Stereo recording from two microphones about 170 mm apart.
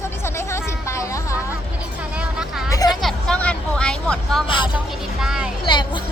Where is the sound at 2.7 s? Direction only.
20° left (ahead or behind).